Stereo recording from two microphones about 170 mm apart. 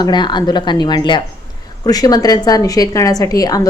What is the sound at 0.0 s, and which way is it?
A woman's voice, 25° left (ahead or behind).